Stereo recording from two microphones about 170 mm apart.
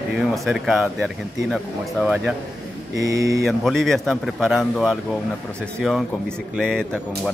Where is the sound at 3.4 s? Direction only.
Centre (ahead or behind).